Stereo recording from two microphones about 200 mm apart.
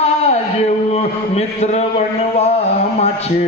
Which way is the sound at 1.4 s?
35° left (ahead or behind).